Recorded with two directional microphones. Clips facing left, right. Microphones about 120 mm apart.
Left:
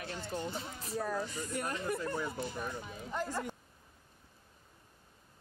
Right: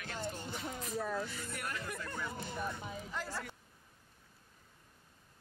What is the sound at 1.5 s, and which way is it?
Speech, 30° left (ahead or behind).